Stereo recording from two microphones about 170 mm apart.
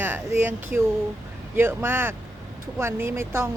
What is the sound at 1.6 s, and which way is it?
A woman's voice, 10° right (ahead or behind).